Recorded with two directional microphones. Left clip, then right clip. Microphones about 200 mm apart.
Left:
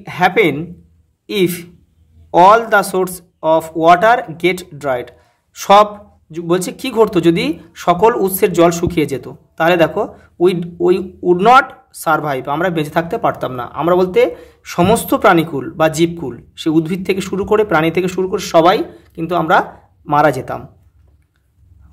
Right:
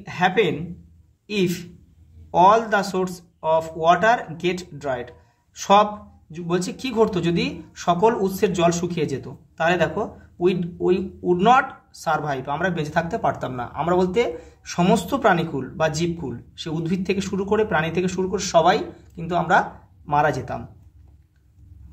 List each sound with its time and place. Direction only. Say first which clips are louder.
0.0 s speech: left 7 dB; 45° left (ahead or behind)